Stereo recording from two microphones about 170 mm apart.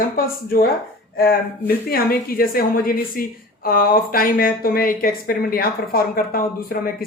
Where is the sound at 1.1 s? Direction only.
60° left (ahead or behind).